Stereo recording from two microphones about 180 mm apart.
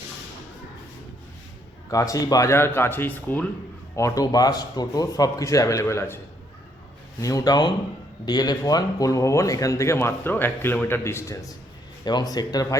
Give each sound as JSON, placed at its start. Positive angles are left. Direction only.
{"t": 1.9, "sound": "a man's voice", "side_deg": 20}
{"t": 7.2, "sound": "a man's voice", "side_deg": 20}